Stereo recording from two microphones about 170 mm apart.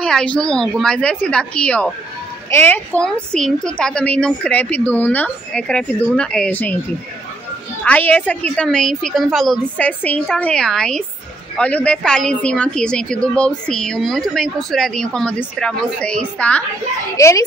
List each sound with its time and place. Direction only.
0.0 s a woman's voice: 5° left (ahead or behind)
7.8 s a woman's voice: 10° left (ahead or behind)
17.2 s a woman's voice: 20° left (ahead or behind)